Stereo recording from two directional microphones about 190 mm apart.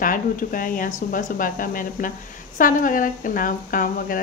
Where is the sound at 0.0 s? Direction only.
45° left (ahead or behind).